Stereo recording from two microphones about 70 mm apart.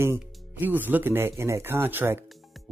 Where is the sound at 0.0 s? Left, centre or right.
Right.